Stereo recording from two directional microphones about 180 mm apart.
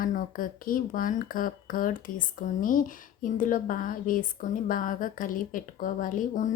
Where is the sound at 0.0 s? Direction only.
50° left (ahead or behind).